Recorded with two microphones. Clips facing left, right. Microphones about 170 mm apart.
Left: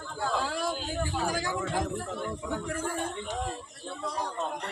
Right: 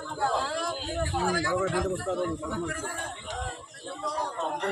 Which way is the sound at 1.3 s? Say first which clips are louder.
Right 4 dB; 20° left (ahead or behind).